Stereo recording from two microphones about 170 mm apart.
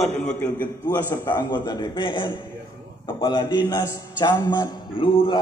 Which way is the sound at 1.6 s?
25° left (ahead or behind).